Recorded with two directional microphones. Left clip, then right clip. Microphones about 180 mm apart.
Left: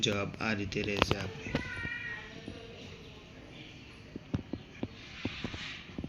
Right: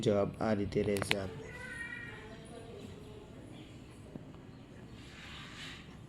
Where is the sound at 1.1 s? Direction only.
30° right (ahead or behind).